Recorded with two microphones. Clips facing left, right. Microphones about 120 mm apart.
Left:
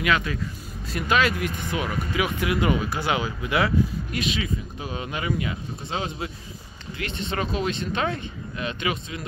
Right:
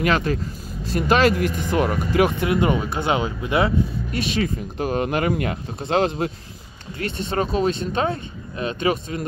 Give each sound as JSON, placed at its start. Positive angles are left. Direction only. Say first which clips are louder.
{"t": 0.0, "sound": "speech", "louder": "right 4 dB", "side_deg": -40}
{"t": 4.4, "sound": "speech", "louder": "right 7 dB", "side_deg": -55}
{"t": 7.0, "sound": "speech", "louder": "right 5 dB", "side_deg": -40}